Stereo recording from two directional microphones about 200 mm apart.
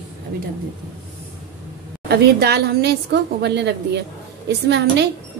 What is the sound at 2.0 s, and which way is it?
A woman's voice, 55° right (ahead or behind).